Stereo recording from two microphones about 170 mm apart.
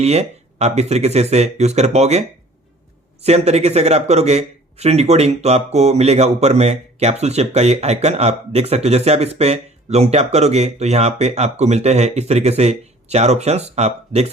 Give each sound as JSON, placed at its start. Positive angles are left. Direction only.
{"t": 0.0, "sound": "speech", "side_deg": -40}
{"t": 3.2, "sound": "speech", "side_deg": -40}